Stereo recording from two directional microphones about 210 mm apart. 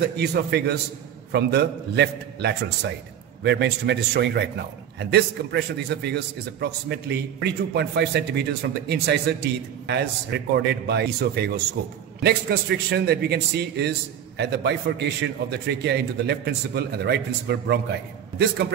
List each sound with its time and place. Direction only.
0.0 s a man's voice: 50° right (ahead or behind)